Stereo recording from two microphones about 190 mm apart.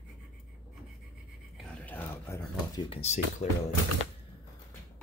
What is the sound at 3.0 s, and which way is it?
Speech, 35° left (ahead or behind).